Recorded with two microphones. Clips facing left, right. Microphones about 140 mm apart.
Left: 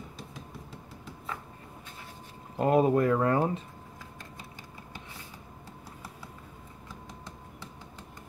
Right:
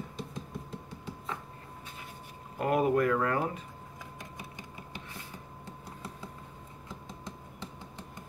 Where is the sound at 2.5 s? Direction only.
25° left (ahead or behind).